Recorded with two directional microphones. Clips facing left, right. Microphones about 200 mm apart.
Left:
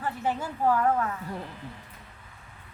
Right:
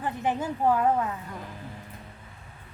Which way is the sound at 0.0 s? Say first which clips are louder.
Right 2 dB; 15° right (ahead or behind).